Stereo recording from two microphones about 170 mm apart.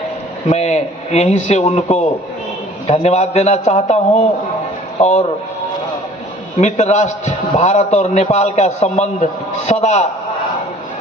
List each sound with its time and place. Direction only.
0.5 s a man's voice: 40° left (ahead or behind)
6.6 s a man's voice: 40° left (ahead or behind)